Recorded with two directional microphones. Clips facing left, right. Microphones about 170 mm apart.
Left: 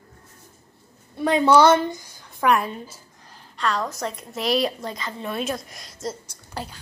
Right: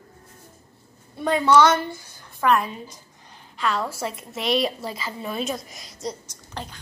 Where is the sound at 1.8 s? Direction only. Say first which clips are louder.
Left 4 dB; 15° left (ahead or behind).